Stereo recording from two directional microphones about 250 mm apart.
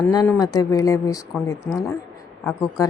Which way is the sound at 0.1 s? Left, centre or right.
Centre.